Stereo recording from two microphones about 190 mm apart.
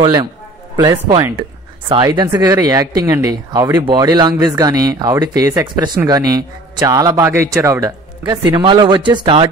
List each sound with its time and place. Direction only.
0.0 s speech: 20° right (ahead or behind)